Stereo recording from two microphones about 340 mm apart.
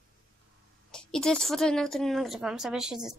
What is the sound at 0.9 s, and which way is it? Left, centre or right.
A woman's voice, centre.